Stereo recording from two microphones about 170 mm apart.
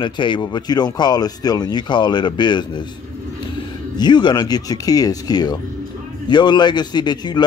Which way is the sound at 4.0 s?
25° left (ahead or behind).